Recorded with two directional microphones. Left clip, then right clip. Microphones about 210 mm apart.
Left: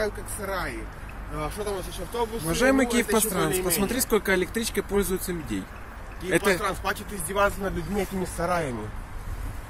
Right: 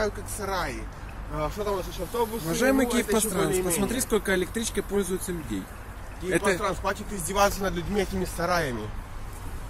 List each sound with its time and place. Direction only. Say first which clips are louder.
0.0 s speech: even; 55° right (ahead or behind)
2.4 s speech: left 3 dB; centre (ahead or behind)
6.6 s speech: even; 40° right (ahead or behind); by 7.5 s 60° right (ahead or behind)
7.7 s speech: right 1 dB; 5° right (ahead or behind)